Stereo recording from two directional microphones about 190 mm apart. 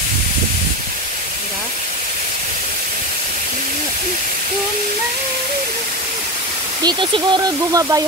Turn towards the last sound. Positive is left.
turn(degrees=-20)  # may be behind; listen again after turning